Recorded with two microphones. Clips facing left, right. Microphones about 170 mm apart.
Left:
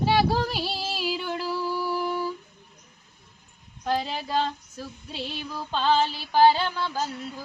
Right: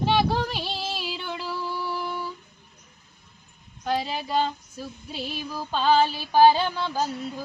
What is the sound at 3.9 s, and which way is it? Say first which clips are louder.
Female singing: even; 5° right (ahead or behind).